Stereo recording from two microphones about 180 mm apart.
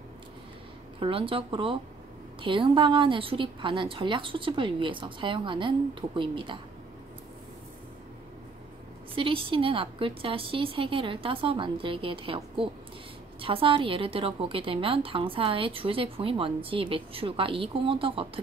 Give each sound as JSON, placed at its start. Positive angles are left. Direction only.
{"t": 0.9, "sound": "a woman's voice", "side_deg": -30}
{"t": 9.1, "sound": "a woman's voice", "side_deg": -30}
{"t": 13.4, "sound": "a woman's voice", "side_deg": -30}